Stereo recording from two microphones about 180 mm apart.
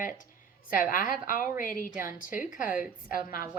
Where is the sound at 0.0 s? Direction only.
50° left (ahead or behind).